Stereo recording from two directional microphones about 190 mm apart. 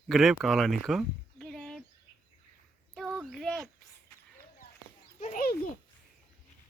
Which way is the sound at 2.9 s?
5° right (ahead or behind).